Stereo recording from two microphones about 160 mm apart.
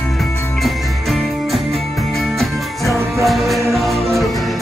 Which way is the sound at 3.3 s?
Centre (ahead or behind).